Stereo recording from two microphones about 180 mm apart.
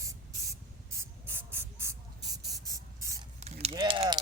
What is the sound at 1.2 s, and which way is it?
Spray, 10° right (ahead or behind).